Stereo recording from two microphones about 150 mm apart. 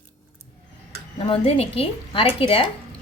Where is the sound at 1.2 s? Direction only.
40° left (ahead or behind).